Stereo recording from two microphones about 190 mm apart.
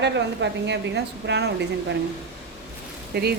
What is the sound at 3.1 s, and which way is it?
Speech, 55° right (ahead or behind).